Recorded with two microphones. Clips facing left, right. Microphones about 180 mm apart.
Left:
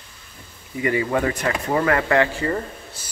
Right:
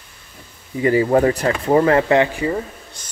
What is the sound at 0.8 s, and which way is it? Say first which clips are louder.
Speech: right 7 dB; 35° right (ahead or behind).